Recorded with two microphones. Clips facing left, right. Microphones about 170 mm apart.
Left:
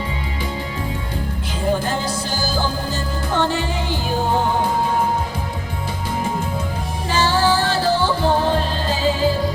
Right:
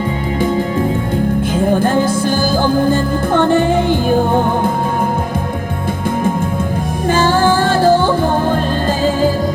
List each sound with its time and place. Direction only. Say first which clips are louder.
1.5 s music: right 6 dB; 50° right (ahead or behind)
7.1 s music: right 5 dB; 50° right (ahead or behind)